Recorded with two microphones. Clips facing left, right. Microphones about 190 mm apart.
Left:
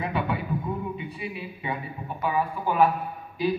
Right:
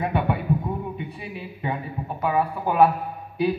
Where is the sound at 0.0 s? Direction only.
55° right (ahead or behind).